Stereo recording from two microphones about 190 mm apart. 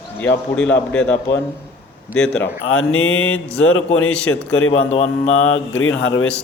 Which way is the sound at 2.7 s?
90° left.